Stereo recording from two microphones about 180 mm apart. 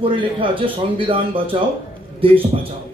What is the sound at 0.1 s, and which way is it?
A man's voice, 30° right (ahead or behind).